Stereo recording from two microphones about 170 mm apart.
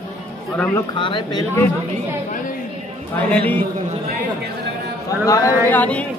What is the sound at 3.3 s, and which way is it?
Speech, 10° left (ahead or behind).